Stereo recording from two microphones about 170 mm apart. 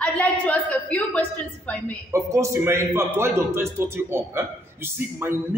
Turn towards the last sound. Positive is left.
turn(degrees=-15)  # may be behind; listen again after turning